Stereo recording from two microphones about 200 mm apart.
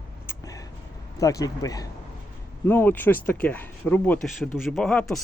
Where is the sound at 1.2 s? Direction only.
15° left (ahead or behind).